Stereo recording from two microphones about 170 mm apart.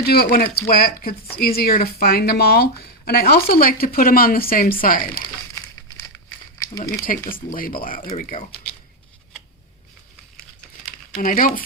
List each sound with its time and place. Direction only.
0.0 s speech: 65° left (ahead or behind)
6.7 s speech: 20° left (ahead or behind)
7.5 s speech: 55° left (ahead or behind)
11.1 s speech: 50° left (ahead or behind)